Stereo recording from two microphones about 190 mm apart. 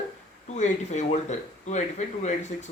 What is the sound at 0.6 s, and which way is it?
Speech, 40° left (ahead or behind).